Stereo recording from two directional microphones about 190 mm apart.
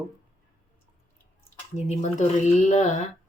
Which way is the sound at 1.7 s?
35° left (ahead or behind).